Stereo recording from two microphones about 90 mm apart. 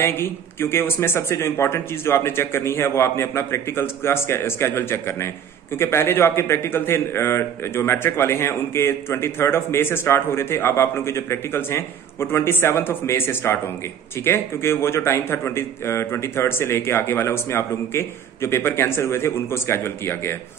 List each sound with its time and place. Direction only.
0.0 s a man's voice: 25° left (ahead or behind)